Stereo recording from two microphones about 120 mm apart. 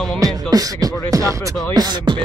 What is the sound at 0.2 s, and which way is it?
Beatboxing, 30° right (ahead or behind).